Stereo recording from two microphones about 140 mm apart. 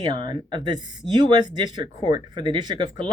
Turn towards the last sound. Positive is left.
turn(degrees=-30)  # may be behind; listen again after turning